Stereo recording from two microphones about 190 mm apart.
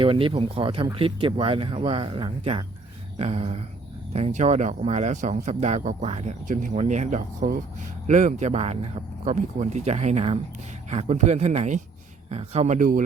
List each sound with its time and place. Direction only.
0.0 s speech: 25° right (ahead or behind)